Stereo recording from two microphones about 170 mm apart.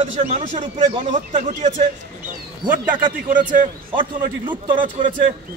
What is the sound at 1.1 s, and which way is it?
Speech, 50° right (ahead or behind).